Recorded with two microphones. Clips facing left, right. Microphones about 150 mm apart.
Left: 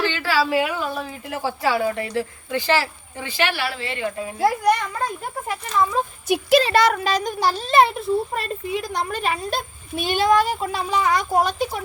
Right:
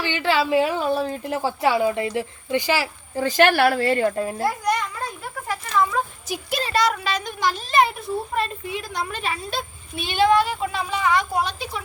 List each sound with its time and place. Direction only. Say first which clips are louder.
0.0 s a sound: even; 20° right (ahead or behind)
0.8 s speech: right 5 dB; 30° right (ahead or behind); by 2.9 s 10° right (ahead or behind)
3.2 s speech: right 7 dB; 45° right (ahead or behind)
4.4 s a child's voice: left 6 dB; 60° left (ahead or behind)
5.5 s a sound: even; 20° left (ahead or behind)
6.2 s speech: left 10 dB; 80° left; by 7.1 s 55° left (ahead or behind)
7.1 s speech: left 3 dB; 35° left (ahead or behind)
8.7 s a child's voice: left 4 dB; 45° left (ahead or behind)